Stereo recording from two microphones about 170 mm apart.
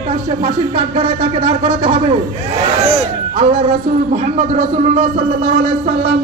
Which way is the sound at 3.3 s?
35° right (ahead or behind).